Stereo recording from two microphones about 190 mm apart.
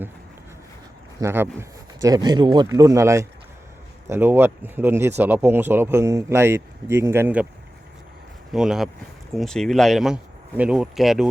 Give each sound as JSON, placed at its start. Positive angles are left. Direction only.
{"t": 1.2, "sound": "speech", "side_deg": -15}
{"t": 8.5, "sound": "speech", "side_deg": -5}